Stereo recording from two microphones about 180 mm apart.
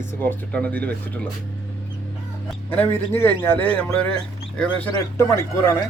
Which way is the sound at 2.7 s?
10° left (ahead or behind).